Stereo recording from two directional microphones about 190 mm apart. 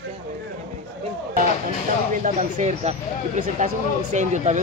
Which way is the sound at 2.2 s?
35° right (ahead or behind).